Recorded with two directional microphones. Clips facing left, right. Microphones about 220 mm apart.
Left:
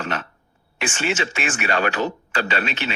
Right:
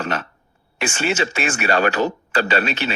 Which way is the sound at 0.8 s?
40° right (ahead or behind).